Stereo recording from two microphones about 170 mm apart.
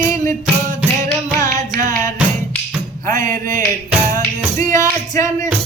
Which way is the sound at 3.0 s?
50° right (ahead or behind).